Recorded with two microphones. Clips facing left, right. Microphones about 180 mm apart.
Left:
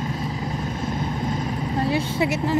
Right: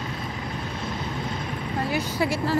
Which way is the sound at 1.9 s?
20° left (ahead or behind).